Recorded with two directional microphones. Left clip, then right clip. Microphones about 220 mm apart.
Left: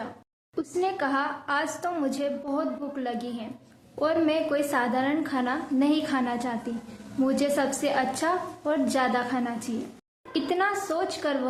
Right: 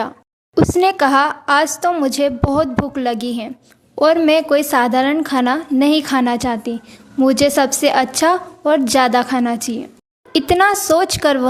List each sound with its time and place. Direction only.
0.5 s speech: 50° right (ahead or behind)